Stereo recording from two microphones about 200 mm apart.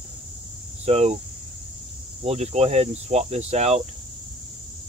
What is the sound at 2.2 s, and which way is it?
Speech, 35° right (ahead or behind).